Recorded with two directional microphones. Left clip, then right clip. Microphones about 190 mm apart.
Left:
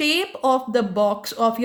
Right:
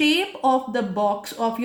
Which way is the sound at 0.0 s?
40° left (ahead or behind).